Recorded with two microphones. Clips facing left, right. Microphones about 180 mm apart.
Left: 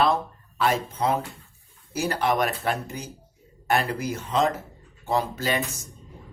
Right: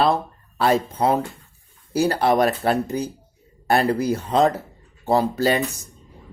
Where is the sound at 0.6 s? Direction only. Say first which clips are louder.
Right 5 dB; 35° right (ahead or behind).